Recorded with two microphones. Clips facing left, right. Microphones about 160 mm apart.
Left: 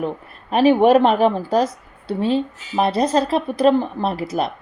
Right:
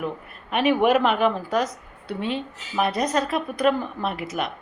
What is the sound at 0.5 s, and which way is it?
Speech, 30° left (ahead or behind).